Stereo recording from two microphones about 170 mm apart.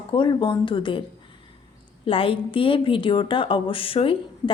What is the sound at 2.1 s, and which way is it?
A woman's voice, 30° left (ahead or behind).